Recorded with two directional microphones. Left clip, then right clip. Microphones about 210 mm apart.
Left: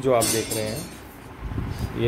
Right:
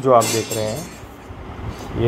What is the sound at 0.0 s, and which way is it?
Speech, 5° left (ahead or behind).